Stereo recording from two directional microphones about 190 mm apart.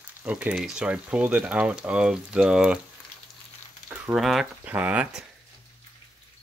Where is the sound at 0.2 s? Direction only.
5° right (ahead or behind).